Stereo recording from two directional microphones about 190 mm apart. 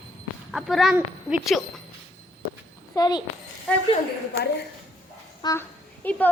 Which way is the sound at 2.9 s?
20° left (ahead or behind).